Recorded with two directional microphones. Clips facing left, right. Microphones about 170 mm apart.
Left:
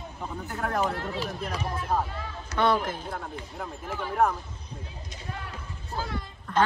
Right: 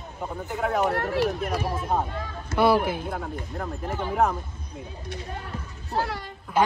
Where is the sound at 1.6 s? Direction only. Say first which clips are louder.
Even; 5° right (ahead or behind).